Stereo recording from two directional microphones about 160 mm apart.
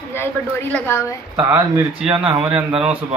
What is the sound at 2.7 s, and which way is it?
Speech, 35° right (ahead or behind).